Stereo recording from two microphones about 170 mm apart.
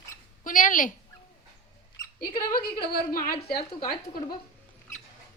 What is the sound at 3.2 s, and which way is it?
A woman's voice, 60° left (ahead or behind).